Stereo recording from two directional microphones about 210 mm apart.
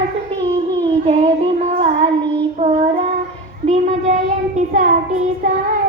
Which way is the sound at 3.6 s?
30° right (ahead or behind).